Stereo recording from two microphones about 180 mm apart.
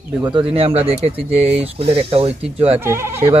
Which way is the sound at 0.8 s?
35° right (ahead or behind).